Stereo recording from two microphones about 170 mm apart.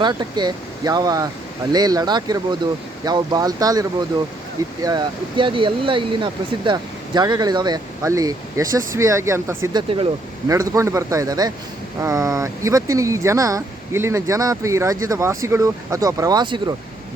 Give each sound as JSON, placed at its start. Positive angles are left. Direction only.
{"t": 0.0, "sound": "speech", "side_deg": -25}